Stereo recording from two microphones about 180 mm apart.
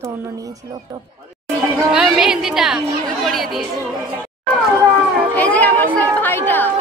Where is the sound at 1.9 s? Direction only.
5° right (ahead or behind).